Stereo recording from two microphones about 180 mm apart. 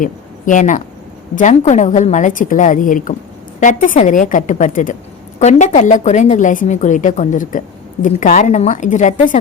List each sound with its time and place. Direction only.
0.0 s a woman's voice: 45° left (ahead or behind)